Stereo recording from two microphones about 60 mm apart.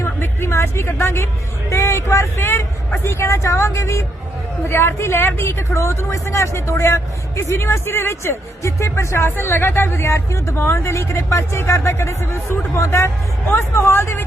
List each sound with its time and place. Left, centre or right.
0.0 s music: left
1.7 s speech: left